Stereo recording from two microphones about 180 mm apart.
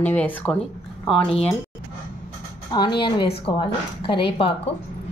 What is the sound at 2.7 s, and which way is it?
Speech, 25° left (ahead or behind).